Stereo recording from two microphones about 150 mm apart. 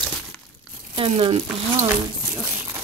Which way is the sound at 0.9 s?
35° right (ahead or behind).